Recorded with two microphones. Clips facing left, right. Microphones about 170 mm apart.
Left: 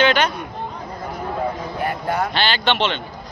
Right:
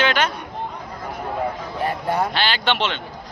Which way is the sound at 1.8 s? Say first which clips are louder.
Right 1 dB; 30° right (ahead or behind).